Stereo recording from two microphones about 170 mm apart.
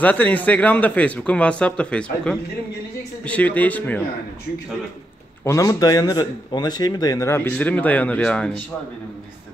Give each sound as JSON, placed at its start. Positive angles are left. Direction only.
{"t": 0.0, "sound": "speech", "side_deg": 10}
{"t": 5.4, "sound": "speech", "side_deg": 20}